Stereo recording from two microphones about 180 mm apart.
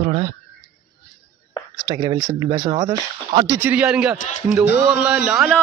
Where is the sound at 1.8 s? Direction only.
25° right (ahead or behind).